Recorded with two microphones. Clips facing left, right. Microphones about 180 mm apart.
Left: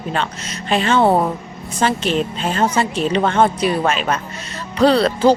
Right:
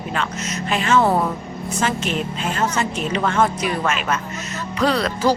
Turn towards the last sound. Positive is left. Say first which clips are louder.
# left 6 dB
turn(degrees=30)  # may be behind; listen again after turning